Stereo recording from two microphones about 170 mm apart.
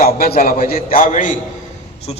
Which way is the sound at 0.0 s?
60° left (ahead or behind).